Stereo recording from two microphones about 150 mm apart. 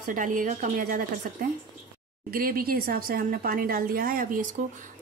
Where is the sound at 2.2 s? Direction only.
75° right (ahead or behind).